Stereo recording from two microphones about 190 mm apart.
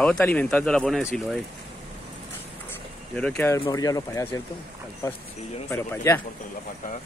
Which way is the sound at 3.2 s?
10° left (ahead or behind).